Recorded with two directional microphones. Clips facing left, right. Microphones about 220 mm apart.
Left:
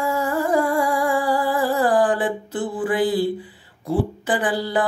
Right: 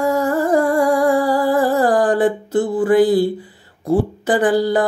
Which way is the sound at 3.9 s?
45° right (ahead or behind).